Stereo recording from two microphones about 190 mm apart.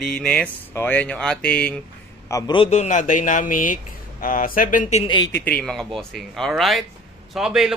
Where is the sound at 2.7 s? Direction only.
40° left (ahead or behind).